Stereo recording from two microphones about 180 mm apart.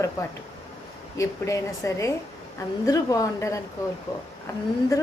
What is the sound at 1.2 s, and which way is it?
A woman's voice, 15° left (ahead or behind).